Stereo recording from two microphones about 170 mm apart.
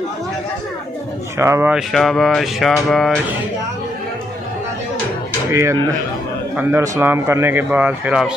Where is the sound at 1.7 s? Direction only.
Centre (ahead or behind).